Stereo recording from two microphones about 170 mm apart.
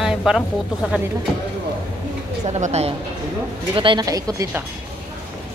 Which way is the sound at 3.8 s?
25° right (ahead or behind).